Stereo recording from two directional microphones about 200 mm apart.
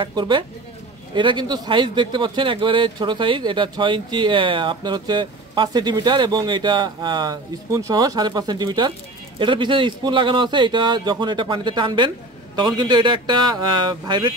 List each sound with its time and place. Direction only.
0.0 s a man's voice: 20° right (ahead or behind)